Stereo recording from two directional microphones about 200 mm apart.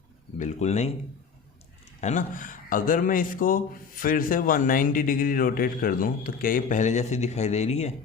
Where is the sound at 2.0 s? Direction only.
40° left (ahead or behind).